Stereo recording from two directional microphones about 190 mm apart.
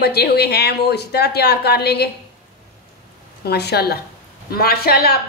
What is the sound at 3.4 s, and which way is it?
A woman's voice, 60° left (ahead or behind).